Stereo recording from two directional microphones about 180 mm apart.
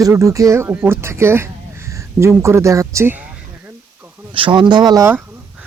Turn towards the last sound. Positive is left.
turn(degrees=-15)  # may be behind; listen again after turning